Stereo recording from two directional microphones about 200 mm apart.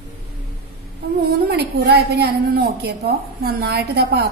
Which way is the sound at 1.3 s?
55° right (ahead or behind).